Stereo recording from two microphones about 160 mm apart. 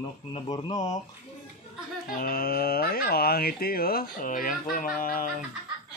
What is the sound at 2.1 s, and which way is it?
Speech, 65° left (ahead or behind).